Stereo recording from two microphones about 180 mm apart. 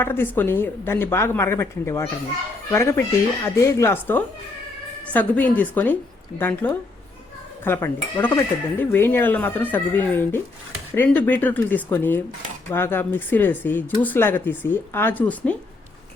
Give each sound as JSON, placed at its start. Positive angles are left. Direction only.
{"t": 0.0, "sound": "speech", "side_deg": 10}